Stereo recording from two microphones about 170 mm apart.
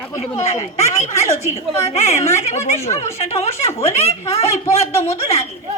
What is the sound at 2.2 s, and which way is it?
Speech, 15° left (ahead or behind).